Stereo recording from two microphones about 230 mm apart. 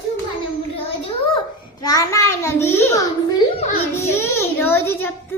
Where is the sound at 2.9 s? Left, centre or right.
Centre.